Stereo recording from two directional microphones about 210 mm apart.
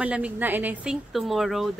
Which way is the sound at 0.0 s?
5° right (ahead or behind).